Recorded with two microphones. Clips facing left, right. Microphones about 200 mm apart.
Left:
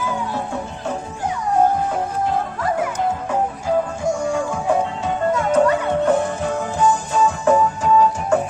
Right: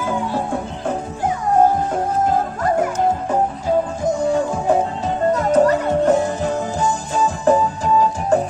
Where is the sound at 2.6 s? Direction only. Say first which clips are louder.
Right 4 dB; 40° right (ahead or behind).